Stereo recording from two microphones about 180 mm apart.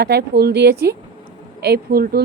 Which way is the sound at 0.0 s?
65° right (ahead or behind).